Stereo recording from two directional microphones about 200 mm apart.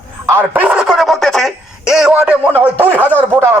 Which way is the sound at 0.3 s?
10° right (ahead or behind).